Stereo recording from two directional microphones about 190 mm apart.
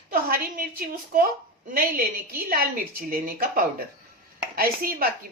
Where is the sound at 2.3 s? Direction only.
50° right (ahead or behind).